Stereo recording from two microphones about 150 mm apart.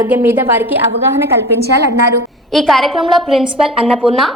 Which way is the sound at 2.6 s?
Centre (ahead or behind).